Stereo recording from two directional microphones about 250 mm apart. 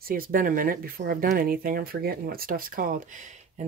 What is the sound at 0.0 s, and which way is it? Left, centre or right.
Speech, right.